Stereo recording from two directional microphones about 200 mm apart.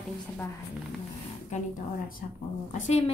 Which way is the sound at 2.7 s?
35° left (ahead or behind).